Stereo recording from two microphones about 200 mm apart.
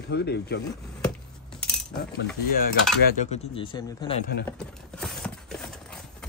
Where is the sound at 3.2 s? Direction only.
35° left (ahead or behind).